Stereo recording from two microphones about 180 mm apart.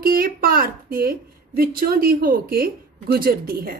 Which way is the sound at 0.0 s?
55° right (ahead or behind).